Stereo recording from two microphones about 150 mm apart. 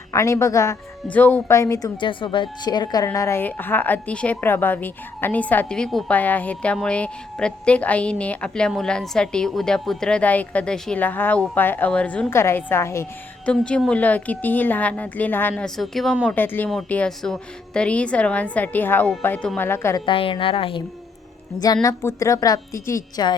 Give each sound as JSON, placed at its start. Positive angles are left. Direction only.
{"t": 0.1, "sound": "a woman's voice", "side_deg": 20}
{"t": 13.5, "sound": "speech", "side_deg": 5}
{"t": 16.3, "sound": "speech", "side_deg": 10}
{"t": 20.1, "sound": "a woman's voice", "side_deg": 35}
{"t": 21.6, "sound": "a woman's voice", "side_deg": 25}